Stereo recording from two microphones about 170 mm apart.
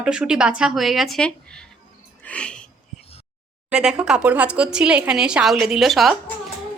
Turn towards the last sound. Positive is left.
turn(degrees=0)  # may be behind; listen again after turning